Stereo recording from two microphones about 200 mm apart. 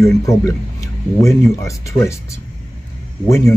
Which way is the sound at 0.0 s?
15° left (ahead or behind).